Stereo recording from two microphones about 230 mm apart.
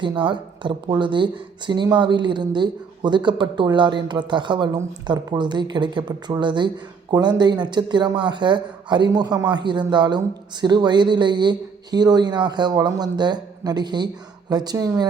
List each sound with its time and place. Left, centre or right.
0.0 s speech: right